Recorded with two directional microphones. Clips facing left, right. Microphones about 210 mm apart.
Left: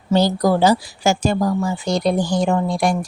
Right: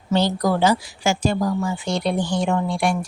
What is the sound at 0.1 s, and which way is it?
Speech, 40° left (ahead or behind).